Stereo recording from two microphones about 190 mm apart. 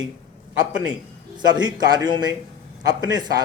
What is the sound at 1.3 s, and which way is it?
A man's voice, 20° right (ahead or behind).